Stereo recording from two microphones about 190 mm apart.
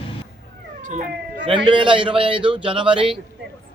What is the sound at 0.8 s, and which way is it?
Cat, 40° right (ahead or behind).